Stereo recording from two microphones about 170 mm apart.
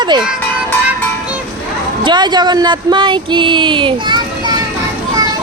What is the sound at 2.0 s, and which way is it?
Speech, 25° right (ahead or behind).